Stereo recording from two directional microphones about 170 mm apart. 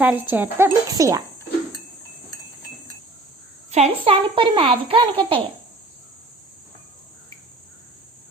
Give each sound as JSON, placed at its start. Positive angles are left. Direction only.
{"t": 0.0, "sound": "a woman's voice", "side_deg": -10}
{"t": 3.7, "sound": "a child's voice", "side_deg": -35}